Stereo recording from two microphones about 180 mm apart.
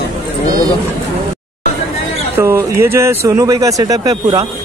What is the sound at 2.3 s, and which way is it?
Speech, 15° right (ahead or behind).